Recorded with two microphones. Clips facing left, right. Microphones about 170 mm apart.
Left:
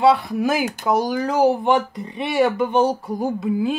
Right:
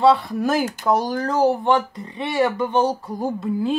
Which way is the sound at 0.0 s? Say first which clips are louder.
Even; 10° left (ahead or behind).